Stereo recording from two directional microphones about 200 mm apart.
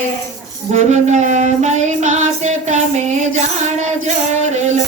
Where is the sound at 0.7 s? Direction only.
35° right (ahead or behind).